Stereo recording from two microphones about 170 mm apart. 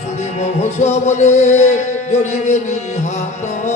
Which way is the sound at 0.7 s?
40° left (ahead or behind).